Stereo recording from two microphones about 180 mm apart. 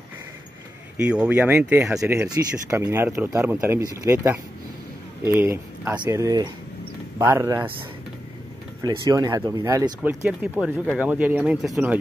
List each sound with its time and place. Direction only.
0.9 s speech: 5° right (ahead or behind)
8.8 s speech: 20° right (ahead or behind)